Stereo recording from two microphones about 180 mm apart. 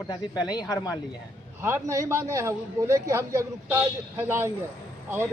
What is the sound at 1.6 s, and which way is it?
A man's voice, 15° right (ahead or behind).